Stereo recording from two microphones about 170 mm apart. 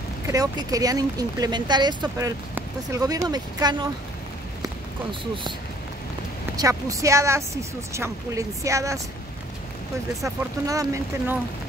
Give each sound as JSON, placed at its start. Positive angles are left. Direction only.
{"t": 0.3, "sound": "speech", "side_deg": -20}
{"t": 6.5, "sound": "speech", "side_deg": -20}
{"t": 10.7, "sound": "speech", "side_deg": -20}